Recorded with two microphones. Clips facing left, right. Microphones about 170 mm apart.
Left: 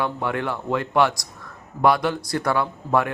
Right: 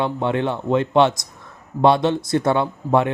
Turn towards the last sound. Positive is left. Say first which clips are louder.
# right 4 dB
turn(degrees=-25)  # may be behind; listen again after turning